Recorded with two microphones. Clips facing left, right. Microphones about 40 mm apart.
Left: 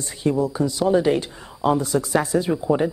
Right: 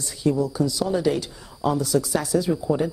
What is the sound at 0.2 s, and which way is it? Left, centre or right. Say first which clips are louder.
Speech: left 1 dB; left.